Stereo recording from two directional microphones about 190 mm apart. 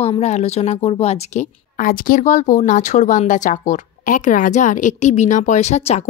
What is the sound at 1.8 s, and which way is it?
Speech, 45° left (ahead or behind).